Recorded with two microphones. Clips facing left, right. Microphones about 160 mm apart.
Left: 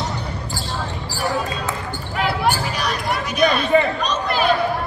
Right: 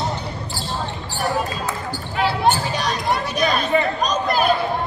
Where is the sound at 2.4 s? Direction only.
25° right (ahead or behind); by 4.4 s 40° right (ahead or behind).